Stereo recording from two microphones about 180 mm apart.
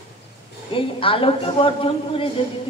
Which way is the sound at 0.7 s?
30° left (ahead or behind).